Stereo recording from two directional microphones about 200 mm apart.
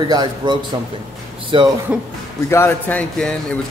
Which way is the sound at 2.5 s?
10° left (ahead or behind).